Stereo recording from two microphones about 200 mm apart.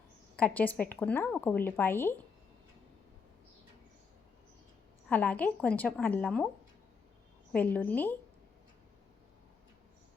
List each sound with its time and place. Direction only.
0.3 s speech: 5° left (ahead or behind)
5.0 s speech: 5° left (ahead or behind)
7.5 s speech: 5° left (ahead or behind)